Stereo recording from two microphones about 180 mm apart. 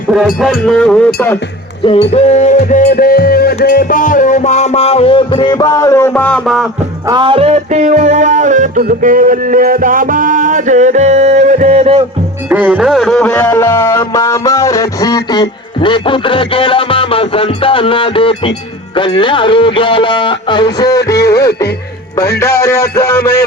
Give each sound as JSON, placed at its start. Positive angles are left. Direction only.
{"t": 0.3, "sound": "speech", "side_deg": 0}
{"t": 2.0, "sound": "music", "side_deg": 35}
{"t": 2.8, "sound": "music", "side_deg": 55}
{"t": 7.1, "sound": "music", "side_deg": -30}
{"t": 12.5, "sound": "music", "side_deg": -10}